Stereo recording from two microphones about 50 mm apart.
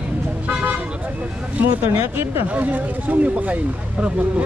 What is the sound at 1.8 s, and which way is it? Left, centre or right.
Speech, right.